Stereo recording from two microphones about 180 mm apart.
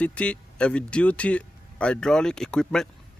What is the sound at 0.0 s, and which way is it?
Speech, 5° left (ahead or behind).